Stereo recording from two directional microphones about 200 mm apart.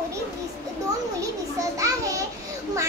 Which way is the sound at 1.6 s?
15° right (ahead or behind).